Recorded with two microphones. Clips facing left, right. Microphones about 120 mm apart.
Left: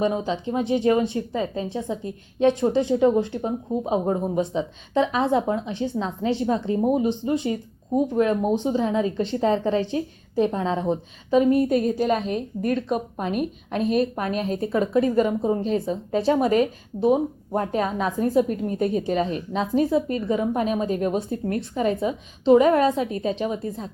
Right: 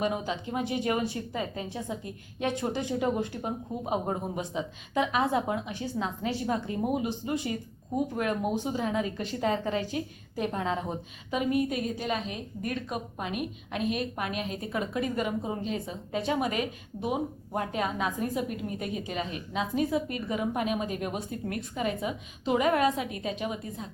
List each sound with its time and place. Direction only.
0.0 s a woman's voice: 25° left (ahead or behind)